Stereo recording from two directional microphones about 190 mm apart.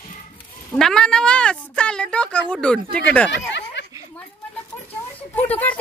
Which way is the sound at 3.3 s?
70° left (ahead or behind).